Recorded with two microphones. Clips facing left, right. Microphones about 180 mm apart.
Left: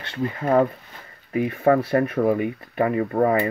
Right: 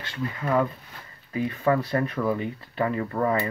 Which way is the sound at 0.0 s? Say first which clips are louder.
Left 5 dB; 30° left (ahead or behind).